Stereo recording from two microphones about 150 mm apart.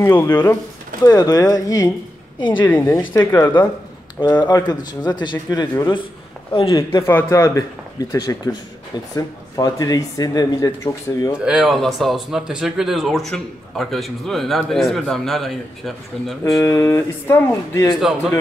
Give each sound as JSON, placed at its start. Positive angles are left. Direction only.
{"t": 0.0, "sound": "speech", "side_deg": 15}
{"t": 1.0, "sound": "a woman's voice", "side_deg": 25}
{"t": 2.7, "sound": "speech", "side_deg": 15}
{"t": 4.4, "sound": "a woman's voice", "side_deg": 25}
{"t": 7.1, "sound": "speech", "side_deg": 20}
{"t": 11.4, "sound": "speech", "side_deg": -5}
{"t": 16.5, "sound": "speech", "side_deg": 20}
{"t": 17.9, "sound": "speech", "side_deg": -5}